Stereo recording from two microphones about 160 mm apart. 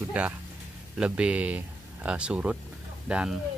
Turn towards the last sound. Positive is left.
turn(degrees=-5)  # may be behind; listen again after turning